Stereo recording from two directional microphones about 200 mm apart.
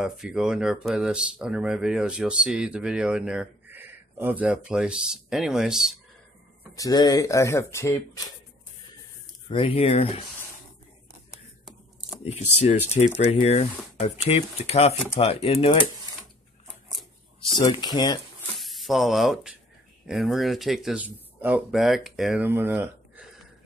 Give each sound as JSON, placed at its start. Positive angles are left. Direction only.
{"t": 0.0, "sound": "speech", "side_deg": -5}
{"t": 6.7, "sound": "speech", "side_deg": 20}
{"t": 9.5, "sound": "speech", "side_deg": 30}
{"t": 13.2, "sound": "speech", "side_deg": 35}
{"t": 16.9, "sound": "scissors", "side_deg": 0}
{"t": 17.6, "sound": "speech", "side_deg": 20}
{"t": 18.6, "sound": "speech", "side_deg": 0}